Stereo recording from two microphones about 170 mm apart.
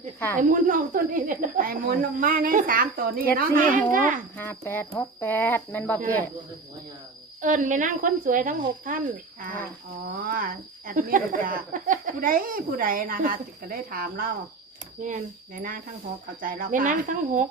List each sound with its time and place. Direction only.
0.3 s speech: 55° right (ahead or behind)
4.4 s speech: 10° left (ahead or behind)
7.4 s speech: 45° right (ahead or behind)
10.1 s speech: 55° right (ahead or behind)